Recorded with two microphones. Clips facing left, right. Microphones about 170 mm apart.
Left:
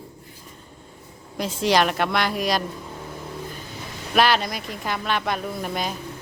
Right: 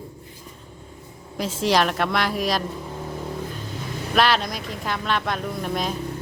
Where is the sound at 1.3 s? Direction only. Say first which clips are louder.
Even; centre (ahead or behind).